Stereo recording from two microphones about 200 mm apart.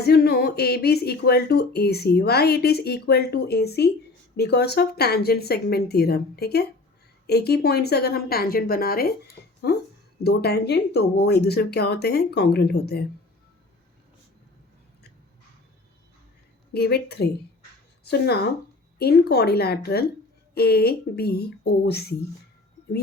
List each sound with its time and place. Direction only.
0.0 s speech: 55° left (ahead or behind)
16.7 s speech: 50° left (ahead or behind)